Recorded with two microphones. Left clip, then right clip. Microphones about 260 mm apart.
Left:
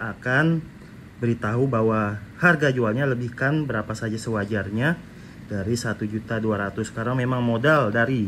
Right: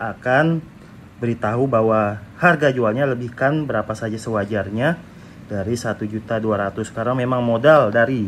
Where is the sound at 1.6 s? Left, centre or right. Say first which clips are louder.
Right 6 dB; centre.